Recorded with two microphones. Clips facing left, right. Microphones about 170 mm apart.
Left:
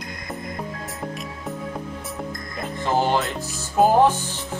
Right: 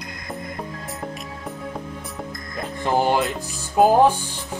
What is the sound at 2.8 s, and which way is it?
Speech, 15° right (ahead or behind).